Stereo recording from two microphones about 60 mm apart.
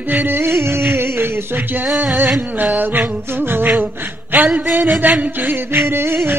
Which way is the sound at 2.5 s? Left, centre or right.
Right.